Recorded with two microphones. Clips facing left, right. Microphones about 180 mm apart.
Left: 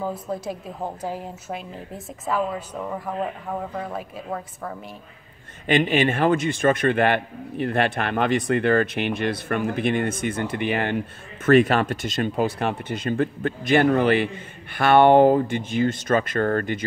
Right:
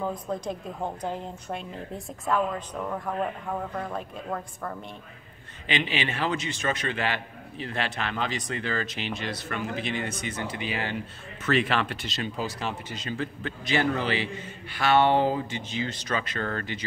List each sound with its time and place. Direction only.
0.0 s a woman's voice: 5° left (ahead or behind)
5.7 s a man's voice: 50° left (ahead or behind)
11.4 s speech: 45° left (ahead or behind)